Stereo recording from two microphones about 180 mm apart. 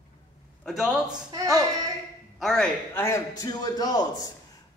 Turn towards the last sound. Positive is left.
turn(degrees=20)  # may be behind; listen again after turning